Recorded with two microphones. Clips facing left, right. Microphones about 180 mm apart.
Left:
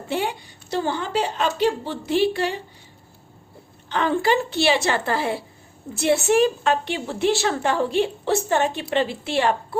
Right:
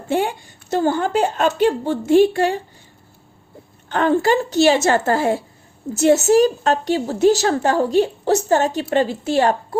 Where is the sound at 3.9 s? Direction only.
50° right (ahead or behind).